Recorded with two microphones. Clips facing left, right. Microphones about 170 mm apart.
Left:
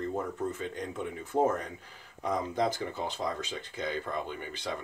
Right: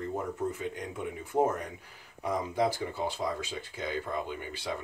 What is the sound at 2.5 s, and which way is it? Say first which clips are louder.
Speech: right 1 dB; 10° right (ahead or behind).